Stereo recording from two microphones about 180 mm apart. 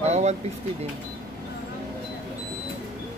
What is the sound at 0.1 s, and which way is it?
Vehicle, 40° right (ahead or behind).